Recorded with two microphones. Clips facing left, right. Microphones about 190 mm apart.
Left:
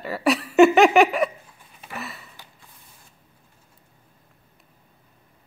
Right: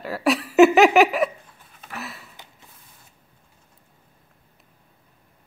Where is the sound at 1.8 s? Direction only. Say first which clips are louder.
Even; centre (ahead or behind).